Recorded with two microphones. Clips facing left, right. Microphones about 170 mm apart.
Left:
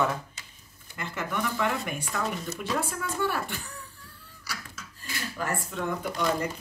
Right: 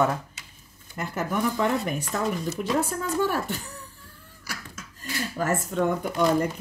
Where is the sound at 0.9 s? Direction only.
40° right (ahead or behind).